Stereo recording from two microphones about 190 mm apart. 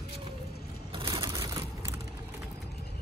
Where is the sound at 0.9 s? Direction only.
25° right (ahead or behind).